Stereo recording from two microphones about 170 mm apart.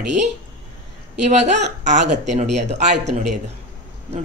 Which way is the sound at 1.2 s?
45° right (ahead or behind).